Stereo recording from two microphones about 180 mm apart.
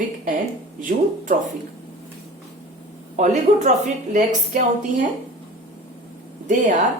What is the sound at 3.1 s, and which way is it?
A woman's voice, 40° right (ahead or behind).